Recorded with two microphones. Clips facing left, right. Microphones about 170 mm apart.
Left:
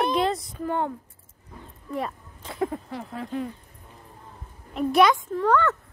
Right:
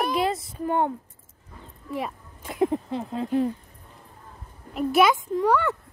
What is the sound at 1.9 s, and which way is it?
Speech, 5° right (ahead or behind).